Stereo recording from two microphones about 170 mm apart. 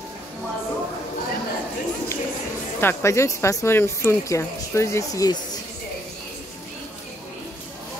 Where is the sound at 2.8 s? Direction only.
15° left (ahead or behind).